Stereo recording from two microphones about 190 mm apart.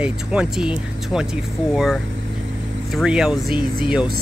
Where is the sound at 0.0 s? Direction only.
5° right (ahead or behind).